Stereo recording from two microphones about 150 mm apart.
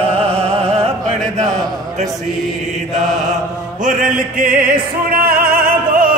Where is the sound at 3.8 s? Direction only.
60° right (ahead or behind).